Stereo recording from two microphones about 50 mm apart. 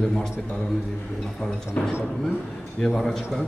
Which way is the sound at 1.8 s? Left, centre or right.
Left.